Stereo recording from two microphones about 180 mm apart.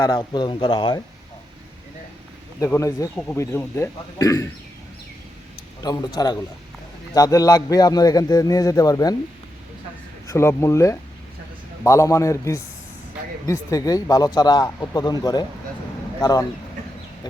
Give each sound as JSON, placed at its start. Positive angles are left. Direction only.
{"t": 0.1, "sound": "a man's voice", "side_deg": 25}
{"t": 2.6, "sound": "a man's voice", "side_deg": 15}
{"t": 5.8, "sound": "a man's voice", "side_deg": 20}
{"t": 10.2, "sound": "a man's voice", "side_deg": 15}